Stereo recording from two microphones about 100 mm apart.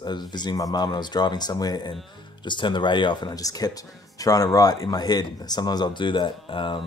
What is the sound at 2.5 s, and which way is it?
Speech, 50° left (ahead or behind).